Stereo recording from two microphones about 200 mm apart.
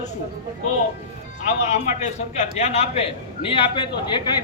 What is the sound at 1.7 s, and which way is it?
A man's voice, 35° left (ahead or behind).